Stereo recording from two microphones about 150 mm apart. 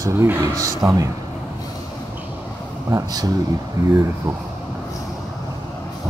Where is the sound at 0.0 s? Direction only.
20° right (ahead or behind).